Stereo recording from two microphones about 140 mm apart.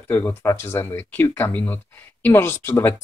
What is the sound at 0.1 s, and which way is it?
Speech, 15° left (ahead or behind).